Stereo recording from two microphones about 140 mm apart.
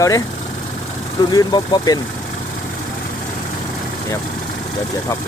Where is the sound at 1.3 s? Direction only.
30° left (ahead or behind).